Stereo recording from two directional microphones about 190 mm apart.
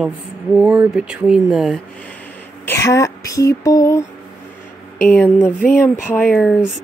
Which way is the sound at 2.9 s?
15° left (ahead or behind).